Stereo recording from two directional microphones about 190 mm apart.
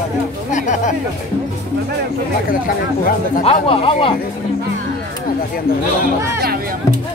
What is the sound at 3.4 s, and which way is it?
Speech, 30° left (ahead or behind).